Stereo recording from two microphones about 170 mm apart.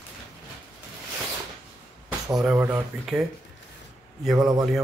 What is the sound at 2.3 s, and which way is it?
Speech, 5° right (ahead or behind).